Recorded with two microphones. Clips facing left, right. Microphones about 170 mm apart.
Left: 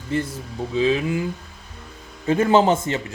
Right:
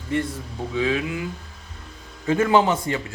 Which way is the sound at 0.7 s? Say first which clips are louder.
Left 3 dB; 25° left (ahead or behind).